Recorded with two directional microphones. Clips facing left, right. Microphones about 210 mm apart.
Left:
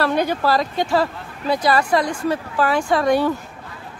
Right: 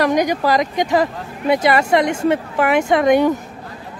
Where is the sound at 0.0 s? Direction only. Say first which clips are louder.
Right 3 dB; 15° right (ahead or behind).